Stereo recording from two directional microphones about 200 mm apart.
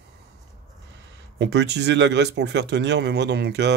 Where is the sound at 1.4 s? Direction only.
60° right (ahead or behind).